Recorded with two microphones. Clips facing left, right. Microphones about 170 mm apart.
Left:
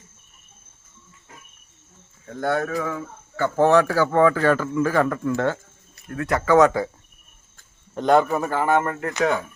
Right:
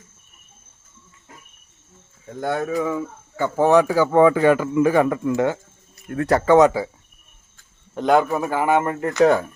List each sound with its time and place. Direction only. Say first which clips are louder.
2.4 s speech: right 1 dB; 15° right (ahead or behind)
6.1 s speech: right 4 dB; 35° right (ahead or behind)
7.9 s speech: even; 5° right (ahead or behind); by 9.1 s 20° right (ahead or behind)